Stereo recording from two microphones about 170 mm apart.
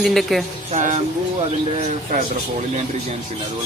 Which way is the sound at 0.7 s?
45° right (ahead or behind).